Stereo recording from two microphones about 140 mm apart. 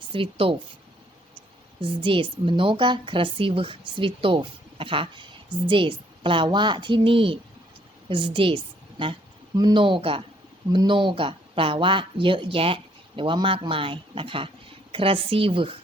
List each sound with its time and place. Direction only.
0.1 s speech: 40° right (ahead or behind)
1.8 s a woman's voice: 40° right (ahead or behind)